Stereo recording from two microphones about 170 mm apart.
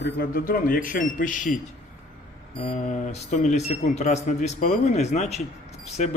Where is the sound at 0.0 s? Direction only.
60° left (ahead or behind).